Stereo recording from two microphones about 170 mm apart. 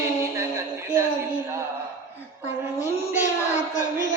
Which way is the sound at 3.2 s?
45° left (ahead or behind).